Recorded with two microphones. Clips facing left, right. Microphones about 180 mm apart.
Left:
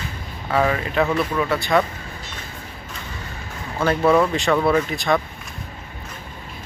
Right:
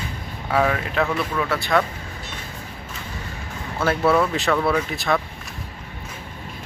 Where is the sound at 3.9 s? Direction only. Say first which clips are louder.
Left 2 dB; 15° left (ahead or behind).